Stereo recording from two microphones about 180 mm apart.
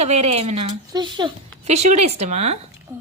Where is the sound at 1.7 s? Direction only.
40° right (ahead or behind).